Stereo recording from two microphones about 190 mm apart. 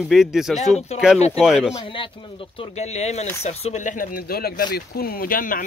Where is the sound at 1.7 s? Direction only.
25° left (ahead or behind).